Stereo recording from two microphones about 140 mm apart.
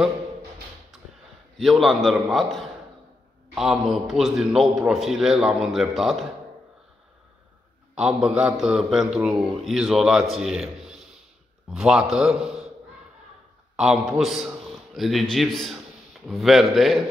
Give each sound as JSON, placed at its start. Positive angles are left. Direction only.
{"t": 0.9, "sound": "a sound", "side_deg": 0}
{"t": 1.6, "sound": "a man's voice", "side_deg": 0}
{"t": 3.5, "sound": "a man's voice", "side_deg": 0}
{"t": 7.9, "sound": "a man's voice", "side_deg": -5}
{"t": 13.7, "sound": "a man's voice", "side_deg": -5}